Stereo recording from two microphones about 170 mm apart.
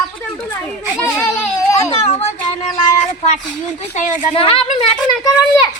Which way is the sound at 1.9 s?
40° left (ahead or behind).